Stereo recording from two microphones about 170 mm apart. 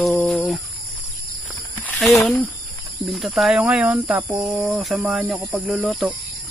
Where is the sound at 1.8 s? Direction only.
10° left (ahead or behind).